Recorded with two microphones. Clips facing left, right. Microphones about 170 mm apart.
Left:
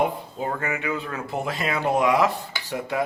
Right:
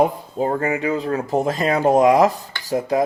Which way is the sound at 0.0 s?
35° right (ahead or behind).